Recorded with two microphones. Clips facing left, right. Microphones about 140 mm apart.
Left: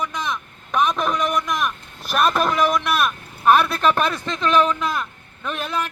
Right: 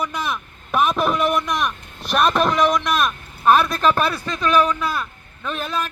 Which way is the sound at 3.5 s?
15° right (ahead or behind).